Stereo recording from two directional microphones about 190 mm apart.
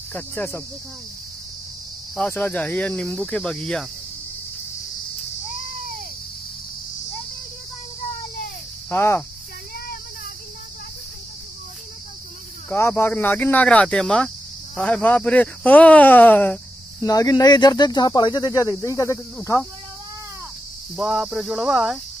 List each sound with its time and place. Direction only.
0.1 s speech: 10° left (ahead or behind)
2.1 s speech: 10° left (ahead or behind)
8.9 s speech: 10° left (ahead or behind)
12.6 s speech: 10° left (ahead or behind)
20.9 s cricket: centre (ahead or behind)